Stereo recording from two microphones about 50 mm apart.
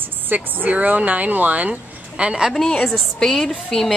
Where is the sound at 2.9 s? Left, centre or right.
Centre.